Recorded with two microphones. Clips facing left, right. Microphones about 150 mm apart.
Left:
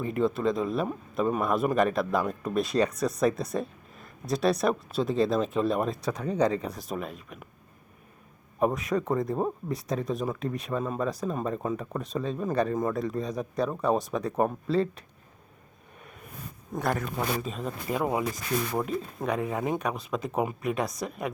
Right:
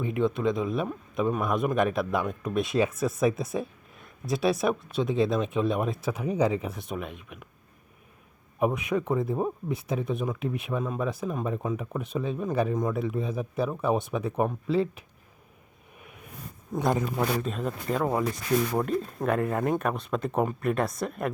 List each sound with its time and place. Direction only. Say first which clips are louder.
0.0 s speech: even; centre (ahead or behind)
8.5 s speech: even; 5° right (ahead or behind)
16.7 s speech: right 3 dB; 15° right (ahead or behind)
17.4 s speech: right 3 dB; centre (ahead or behind)